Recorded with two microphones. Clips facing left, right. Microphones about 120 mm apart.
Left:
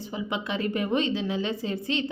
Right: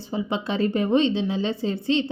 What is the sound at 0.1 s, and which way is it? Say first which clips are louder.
A woman's voice: right 5 dB; 30° right (ahead or behind).